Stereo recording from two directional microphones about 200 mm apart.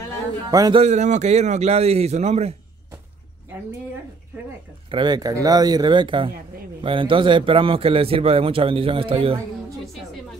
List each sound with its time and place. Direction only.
0.5 s a man's voice: 20° right (ahead or behind)
0.8 s a man's voice: 35° right (ahead or behind)
4.9 s a man's voice: 20° right (ahead or behind)